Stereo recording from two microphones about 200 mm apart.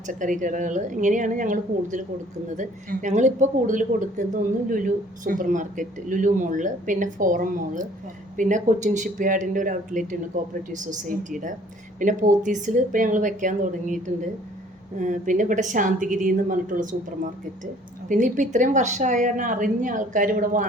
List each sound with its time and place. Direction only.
0.1 s speech: 40° right (ahead or behind)
18.1 s speech: 40° right (ahead or behind)